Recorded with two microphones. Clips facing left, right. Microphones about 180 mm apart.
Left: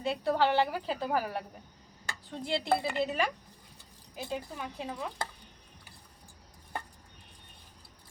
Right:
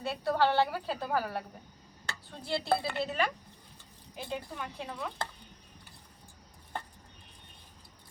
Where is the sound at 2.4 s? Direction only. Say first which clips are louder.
Left 1 dB; 15° left (ahead or behind).